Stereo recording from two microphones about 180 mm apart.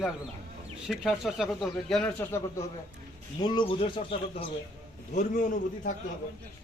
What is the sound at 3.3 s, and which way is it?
Speech, 25° left (ahead or behind).